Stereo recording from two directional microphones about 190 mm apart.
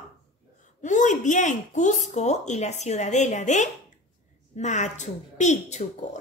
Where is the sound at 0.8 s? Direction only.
40° left (ahead or behind).